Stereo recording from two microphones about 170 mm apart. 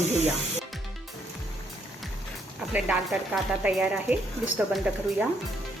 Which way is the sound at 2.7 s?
5° right (ahead or behind).